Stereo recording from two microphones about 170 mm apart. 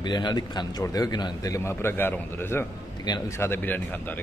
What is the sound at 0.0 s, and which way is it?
A man's voice, 25° left (ahead or behind).